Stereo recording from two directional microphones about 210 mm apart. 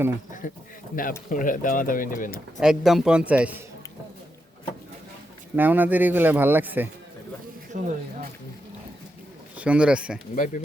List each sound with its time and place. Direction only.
0.4 s speech: 40° left (ahead or behind)
2.6 s a man's voice: centre (ahead or behind)
5.5 s speech: 10° right (ahead or behind)
7.7 s speech: 35° right (ahead or behind)
9.6 s a man's voice: 5° right (ahead or behind)
10.3 s speech: 40° left (ahead or behind)